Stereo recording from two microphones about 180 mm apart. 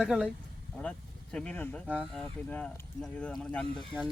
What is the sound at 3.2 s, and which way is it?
Speech, 5° left (ahead or behind).